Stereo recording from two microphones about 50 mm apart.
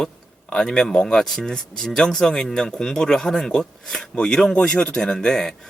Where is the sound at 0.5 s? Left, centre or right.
Centre.